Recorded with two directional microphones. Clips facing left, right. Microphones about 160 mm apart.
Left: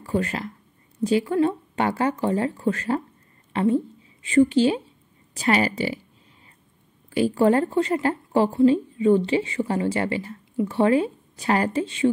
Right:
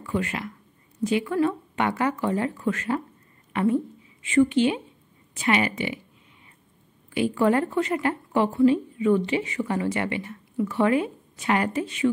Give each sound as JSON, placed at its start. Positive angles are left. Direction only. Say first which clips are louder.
{"t": 0.0, "sound": "a woman's voice", "louder": "left 3 dB", "side_deg": 35}
{"t": 7.1, "sound": "speech", "louder": "left 3 dB", "side_deg": 35}